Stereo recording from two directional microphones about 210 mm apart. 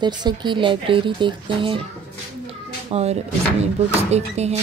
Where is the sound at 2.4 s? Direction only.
30° right (ahead or behind).